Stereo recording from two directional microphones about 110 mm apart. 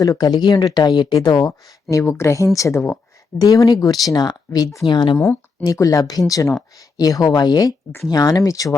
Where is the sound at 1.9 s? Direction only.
25° left (ahead or behind).